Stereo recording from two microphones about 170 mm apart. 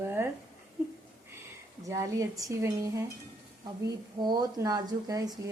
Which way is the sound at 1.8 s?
20° right (ahead or behind).